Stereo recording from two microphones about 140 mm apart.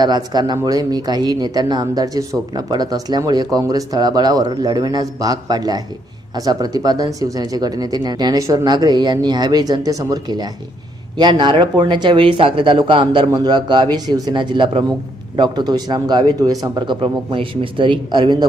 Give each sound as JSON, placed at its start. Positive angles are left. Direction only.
{"t": 0.0, "sound": "a man's voice", "side_deg": -30}